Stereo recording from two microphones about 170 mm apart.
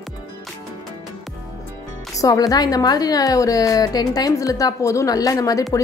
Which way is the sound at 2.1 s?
20° left (ahead or behind).